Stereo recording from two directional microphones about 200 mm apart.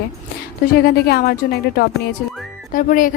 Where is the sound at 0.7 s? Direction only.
50° left (ahead or behind).